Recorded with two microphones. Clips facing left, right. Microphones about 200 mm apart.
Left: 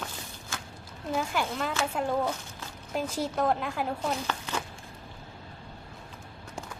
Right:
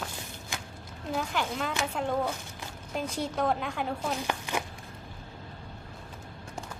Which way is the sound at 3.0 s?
5° left (ahead or behind).